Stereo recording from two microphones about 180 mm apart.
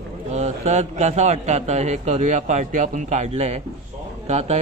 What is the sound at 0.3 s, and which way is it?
A man's voice, 40° right (ahead or behind).